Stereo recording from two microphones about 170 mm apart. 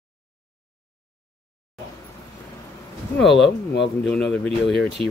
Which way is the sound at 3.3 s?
90° left.